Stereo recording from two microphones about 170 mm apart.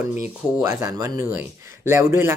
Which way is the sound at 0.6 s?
15° right (ahead or behind).